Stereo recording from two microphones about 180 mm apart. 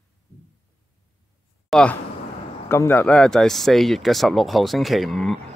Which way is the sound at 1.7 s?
5° left (ahead or behind).